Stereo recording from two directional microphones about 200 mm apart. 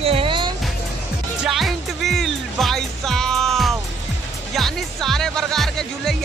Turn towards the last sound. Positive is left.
turn(degrees=0)  # may be behind; listen again after turning